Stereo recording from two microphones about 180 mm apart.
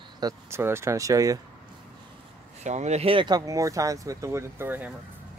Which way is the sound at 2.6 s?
40° right (ahead or behind).